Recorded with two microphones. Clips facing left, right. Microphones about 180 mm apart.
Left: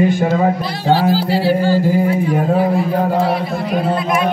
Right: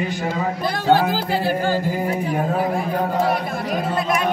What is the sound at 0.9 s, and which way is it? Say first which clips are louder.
Music: left 4 dB; 50° right (ahead or behind).